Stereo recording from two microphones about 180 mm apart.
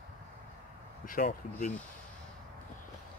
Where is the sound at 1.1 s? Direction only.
50° left (ahead or behind).